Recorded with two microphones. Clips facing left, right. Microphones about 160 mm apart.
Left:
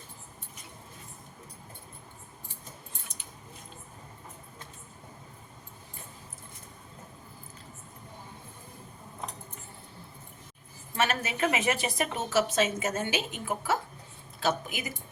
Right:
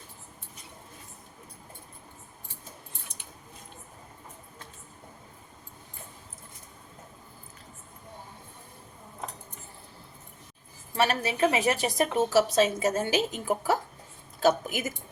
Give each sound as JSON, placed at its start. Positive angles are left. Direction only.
{"t": 10.9, "sound": "a woman's voice", "side_deg": -35}